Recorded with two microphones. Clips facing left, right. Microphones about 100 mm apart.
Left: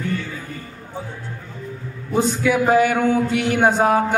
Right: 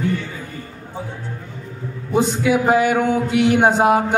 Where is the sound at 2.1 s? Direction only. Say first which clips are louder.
Right 1 dB; 15° right (ahead or behind).